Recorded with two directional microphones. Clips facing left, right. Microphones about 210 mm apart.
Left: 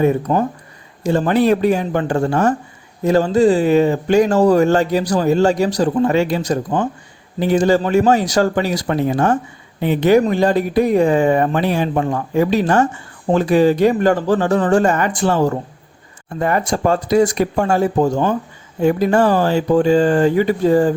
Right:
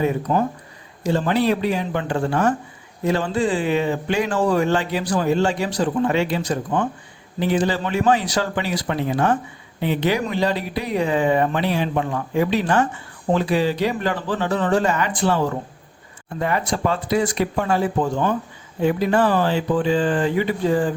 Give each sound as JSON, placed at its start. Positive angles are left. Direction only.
{"t": 0.0, "sound": "speech", "side_deg": 40}